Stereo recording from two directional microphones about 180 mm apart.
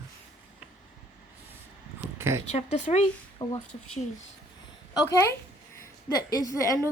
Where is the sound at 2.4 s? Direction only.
40° left (ahead or behind).